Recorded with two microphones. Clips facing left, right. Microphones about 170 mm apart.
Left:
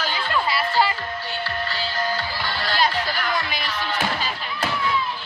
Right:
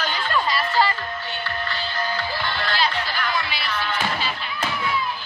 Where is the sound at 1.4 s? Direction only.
35° left (ahead or behind).